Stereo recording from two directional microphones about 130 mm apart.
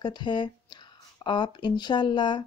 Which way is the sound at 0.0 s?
35° left (ahead or behind).